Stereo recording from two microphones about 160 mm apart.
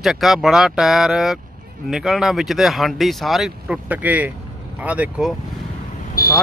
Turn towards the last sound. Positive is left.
turn(degrees=70)  # may be behind; listen again after turning